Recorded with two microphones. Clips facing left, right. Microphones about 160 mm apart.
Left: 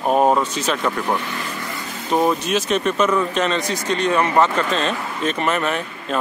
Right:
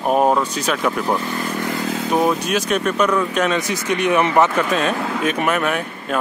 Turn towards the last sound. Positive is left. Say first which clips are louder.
# right 1 dB
turn(degrees=-5)  # may be behind; listen again after turning